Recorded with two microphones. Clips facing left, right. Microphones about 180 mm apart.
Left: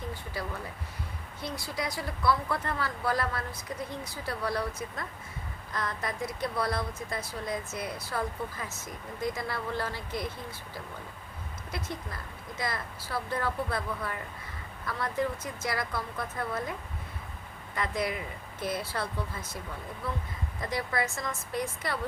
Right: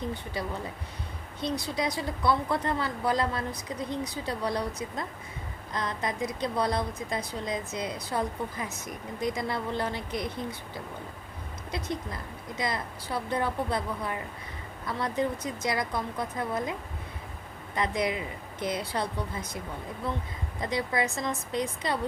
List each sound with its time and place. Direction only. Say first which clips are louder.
1.4 s speech: right 5 dB; 20° right (ahead or behind)
11.7 s speech: right 4 dB; 20° right (ahead or behind)
17.7 s speech: right 3 dB; 20° right (ahead or behind)